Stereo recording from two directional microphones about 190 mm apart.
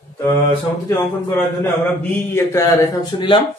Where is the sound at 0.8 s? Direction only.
15° left (ahead or behind).